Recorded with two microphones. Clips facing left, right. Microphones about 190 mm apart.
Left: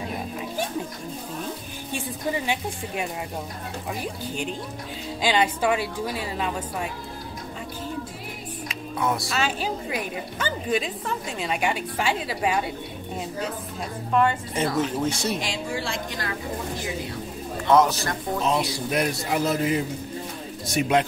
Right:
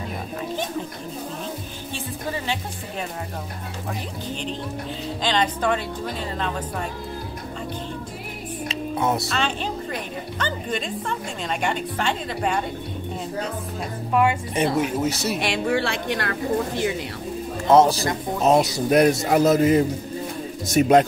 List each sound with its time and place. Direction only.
2.0 s speech: 15° left (ahead or behind)
5.2 s speech: 10° left (ahead or behind)
8.6 s music: 25° right (ahead or behind)
9.3 s speech: 5° left (ahead or behind)
14.1 s speech: 15° right (ahead or behind)
15.3 s a woman's voice: 65° right (ahead or behind)
17.6 s a man's voice: 35° right (ahead or behind)
18.4 s a man's voice: 45° right (ahead or behind)